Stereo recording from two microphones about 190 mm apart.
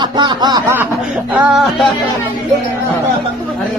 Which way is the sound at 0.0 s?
25° right (ahead or behind).